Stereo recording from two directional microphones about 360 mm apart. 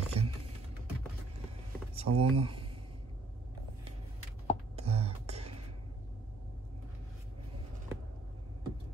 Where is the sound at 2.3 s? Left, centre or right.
Centre.